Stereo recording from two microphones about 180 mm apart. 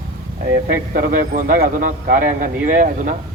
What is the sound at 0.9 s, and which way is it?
A man's voice, 50° right (ahead or behind).